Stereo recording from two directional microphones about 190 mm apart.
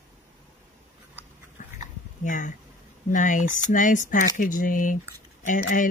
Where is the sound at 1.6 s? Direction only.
45° left (ahead or behind).